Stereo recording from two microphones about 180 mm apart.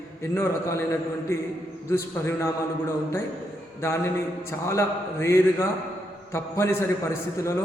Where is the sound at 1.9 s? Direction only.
15° left (ahead or behind).